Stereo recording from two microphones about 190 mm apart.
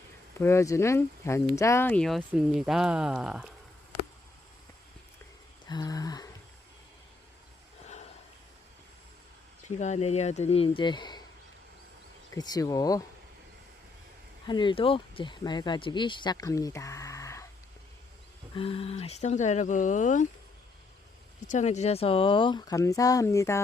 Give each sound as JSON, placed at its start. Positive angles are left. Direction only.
{"t": 0.3, "sound": "speech", "side_deg": 15}
{"t": 5.6, "sound": "a sound", "side_deg": 20}
{"t": 9.6, "sound": "speech", "side_deg": 40}
{"t": 12.3, "sound": "speech", "side_deg": 20}
{"t": 14.4, "sound": "speech", "side_deg": 25}
{"t": 18.5, "sound": "speech", "side_deg": 30}
{"t": 21.4, "sound": "speech", "side_deg": 40}